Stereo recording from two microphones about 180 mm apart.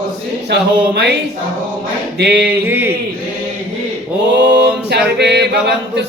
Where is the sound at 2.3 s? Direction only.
10° right (ahead or behind).